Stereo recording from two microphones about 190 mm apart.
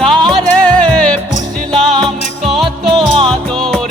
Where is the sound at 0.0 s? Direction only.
Centre (ahead or behind).